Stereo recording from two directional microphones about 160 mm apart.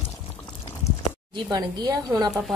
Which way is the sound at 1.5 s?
25° right (ahead or behind).